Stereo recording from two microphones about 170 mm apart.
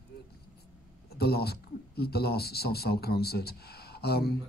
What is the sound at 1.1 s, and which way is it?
Speech, 70° left (ahead or behind).